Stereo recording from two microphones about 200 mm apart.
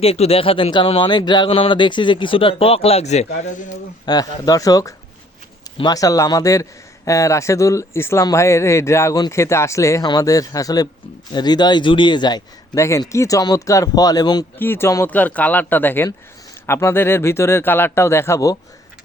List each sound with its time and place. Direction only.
0.0 s speech: 30° left (ahead or behind)
4.0 s speech: 20° left (ahead or behind)